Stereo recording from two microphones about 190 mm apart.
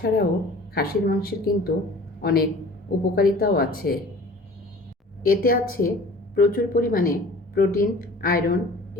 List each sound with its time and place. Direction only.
0.0 s a woman's voice: 55° left (ahead or behind)
5.2 s speech: 50° left (ahead or behind)